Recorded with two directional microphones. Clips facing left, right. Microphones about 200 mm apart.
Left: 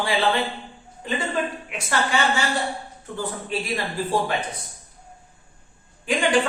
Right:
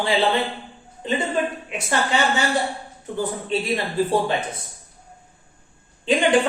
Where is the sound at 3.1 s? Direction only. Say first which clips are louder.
Right 4 dB; 25° right (ahead or behind).